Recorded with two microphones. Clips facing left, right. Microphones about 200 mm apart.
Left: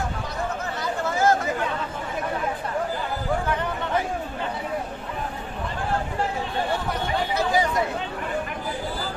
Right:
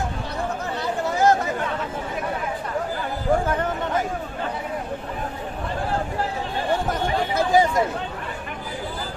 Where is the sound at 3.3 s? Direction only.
45° right (ahead or behind).